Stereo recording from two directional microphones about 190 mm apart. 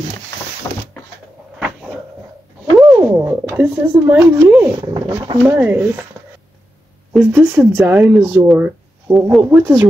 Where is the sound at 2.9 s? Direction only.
15° right (ahead or behind).